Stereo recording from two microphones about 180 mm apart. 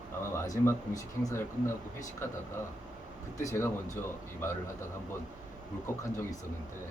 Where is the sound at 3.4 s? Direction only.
15° left (ahead or behind).